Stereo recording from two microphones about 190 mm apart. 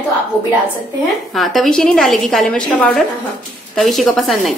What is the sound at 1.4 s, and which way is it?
A woman's voice, centre (ahead or behind).